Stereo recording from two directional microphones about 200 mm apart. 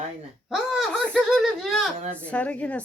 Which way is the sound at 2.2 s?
5° left (ahead or behind).